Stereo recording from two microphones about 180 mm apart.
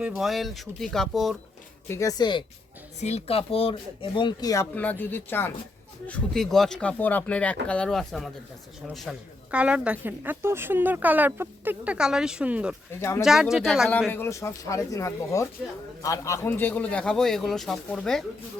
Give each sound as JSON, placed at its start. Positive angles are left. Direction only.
{"t": 0.0, "sound": "speech", "side_deg": 0}
{"t": 1.9, "sound": "speech", "side_deg": 15}
{"t": 3.0, "sound": "speech", "side_deg": 35}
{"t": 13.0, "sound": "speech", "side_deg": 15}
{"t": 13.2, "sound": "speech", "side_deg": 0}
{"t": 14.1, "sound": "speech", "side_deg": 15}